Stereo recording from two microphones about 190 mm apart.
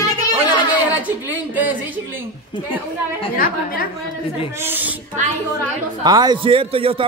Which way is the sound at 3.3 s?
50° left (ahead or behind).